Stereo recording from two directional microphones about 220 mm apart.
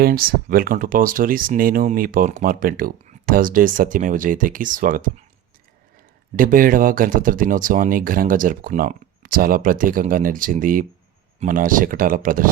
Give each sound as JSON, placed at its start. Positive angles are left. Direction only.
{"t": 0.0, "sound": "speech", "side_deg": -40}
{"t": 6.3, "sound": "speech", "side_deg": -40}